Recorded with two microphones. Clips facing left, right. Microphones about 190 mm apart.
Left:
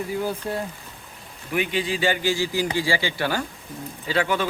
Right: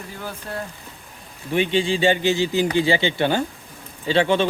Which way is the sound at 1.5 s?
25° right (ahead or behind).